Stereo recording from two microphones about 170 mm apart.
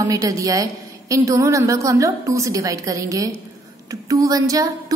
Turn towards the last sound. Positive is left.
turn(degrees=-20)  # may be behind; listen again after turning